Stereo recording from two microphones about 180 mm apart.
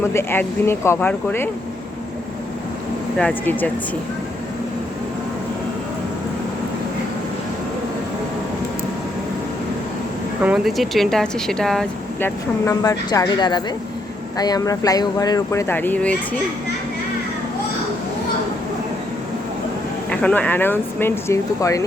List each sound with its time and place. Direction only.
0.1 s speech: 15° left (ahead or behind)
3.2 s speech: 5° left (ahead or behind)
10.4 s speech: 5° right (ahead or behind)
12.6 s speech: 20° left (ahead or behind)
20.1 s speech: 5° left (ahead or behind)